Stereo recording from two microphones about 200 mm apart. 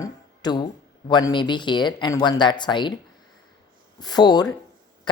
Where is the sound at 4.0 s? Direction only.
20° left (ahead or behind).